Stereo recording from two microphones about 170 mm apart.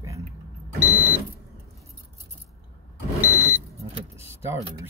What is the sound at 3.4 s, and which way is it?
Vehicle, 15° right (ahead or behind).